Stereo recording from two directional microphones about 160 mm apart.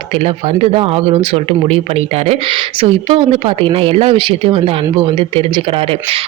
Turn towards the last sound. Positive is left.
turn(degrees=-35)  # may be behind; listen again after turning